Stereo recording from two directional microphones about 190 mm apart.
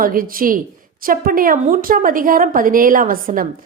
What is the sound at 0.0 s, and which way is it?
A woman's voice, 50° right (ahead or behind).